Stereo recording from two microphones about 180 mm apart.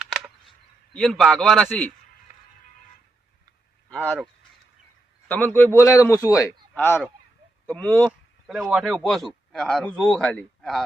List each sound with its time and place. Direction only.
0.0 s a sound: centre (ahead or behind)
0.9 s a man's voice: centre (ahead or behind)
3.8 s speech: 5° left (ahead or behind)
5.3 s a man's voice: 10° left (ahead or behind)